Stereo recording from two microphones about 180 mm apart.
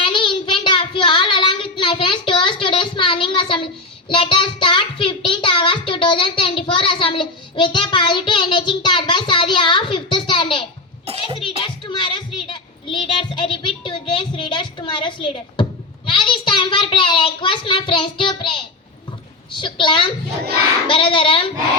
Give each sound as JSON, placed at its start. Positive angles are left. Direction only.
{"t": 0.0, "sound": "child singing", "side_deg": 30}
{"t": 16.0, "sound": "a sound", "side_deg": 25}
{"t": 20.8, "sound": "child singing", "side_deg": 30}